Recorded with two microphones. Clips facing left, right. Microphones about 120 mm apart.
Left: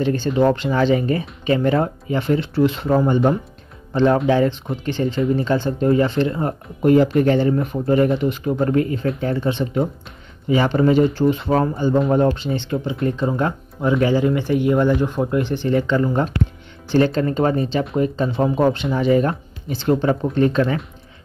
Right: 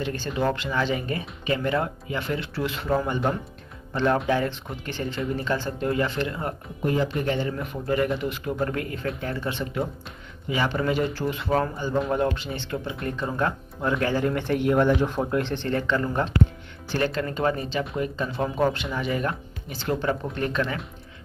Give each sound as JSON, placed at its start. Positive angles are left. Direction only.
{"t": 0.0, "sound": "speech", "side_deg": 30}
{"t": 6.8, "sound": "speech", "side_deg": 55}
{"t": 7.3, "sound": "speech", "side_deg": 35}
{"t": 15.7, "sound": "speech", "side_deg": 20}